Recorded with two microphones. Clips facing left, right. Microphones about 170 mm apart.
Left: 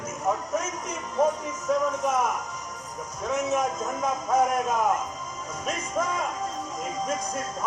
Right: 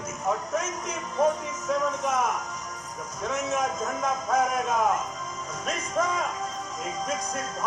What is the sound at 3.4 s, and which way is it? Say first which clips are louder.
A man's voice: left 1 dB; 5° left (ahead or behind).